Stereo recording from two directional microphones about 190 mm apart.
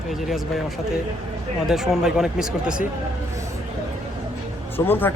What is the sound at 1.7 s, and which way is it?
Speech, 5° right (ahead or behind).